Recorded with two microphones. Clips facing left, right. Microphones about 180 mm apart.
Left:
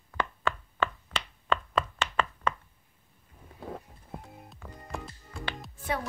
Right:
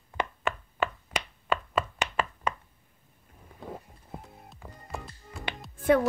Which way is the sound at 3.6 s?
Centre (ahead or behind).